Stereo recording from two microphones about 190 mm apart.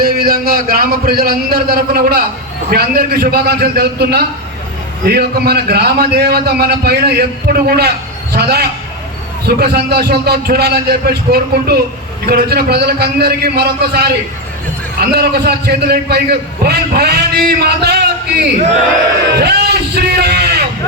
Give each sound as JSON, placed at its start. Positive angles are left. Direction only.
{"t": 0.0, "sound": "a man's voice", "side_deg": -50}